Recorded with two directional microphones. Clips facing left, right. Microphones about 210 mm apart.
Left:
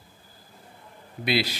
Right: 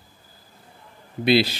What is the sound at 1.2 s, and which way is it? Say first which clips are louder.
Speech: right 7 dB; 30° right (ahead or behind).